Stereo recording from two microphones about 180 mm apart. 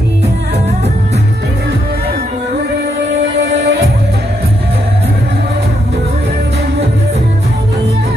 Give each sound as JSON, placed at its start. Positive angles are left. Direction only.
{"t": 3.4, "sound": "music", "side_deg": -70}